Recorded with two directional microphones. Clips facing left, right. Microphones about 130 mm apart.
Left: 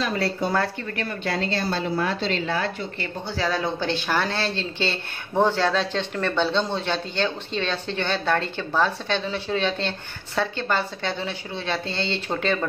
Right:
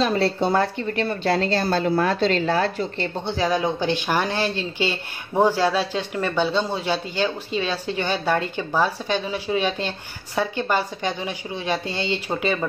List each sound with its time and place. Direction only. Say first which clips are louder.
0.0 s a woman's voice: right 4 dB; 30° right (ahead or behind)
1.6 s a woman's voice: right 4 dB; 50° right (ahead or behind)
3.3 s speech: right 3 dB; 15° right (ahead or behind)